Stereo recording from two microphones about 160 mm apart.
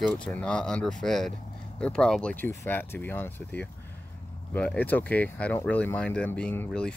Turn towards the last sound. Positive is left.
turn(degrees=5)  # may be behind; listen again after turning